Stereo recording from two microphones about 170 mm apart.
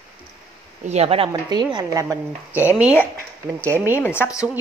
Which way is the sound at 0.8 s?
40° right (ahead or behind).